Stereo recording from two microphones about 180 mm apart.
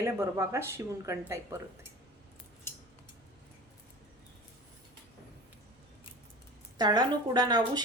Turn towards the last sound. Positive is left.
turn(degrees=-25)  # may be behind; listen again after turning